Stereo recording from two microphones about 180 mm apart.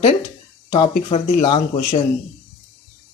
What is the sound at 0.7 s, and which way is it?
Speech, 30° left (ahead or behind).